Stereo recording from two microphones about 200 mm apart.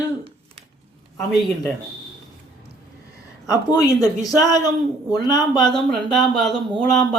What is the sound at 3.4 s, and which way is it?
Speech, 20° left (ahead or behind).